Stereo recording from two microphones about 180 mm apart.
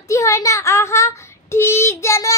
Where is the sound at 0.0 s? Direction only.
15° left (ahead or behind).